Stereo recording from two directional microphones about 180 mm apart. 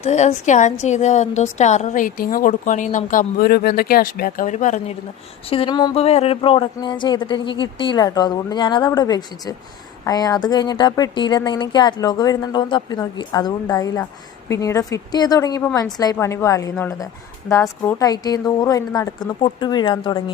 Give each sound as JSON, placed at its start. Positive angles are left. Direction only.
{"t": 0.0, "sound": "a woman's voice", "side_deg": 40}
{"t": 5.5, "sound": "a woman's voice", "side_deg": 30}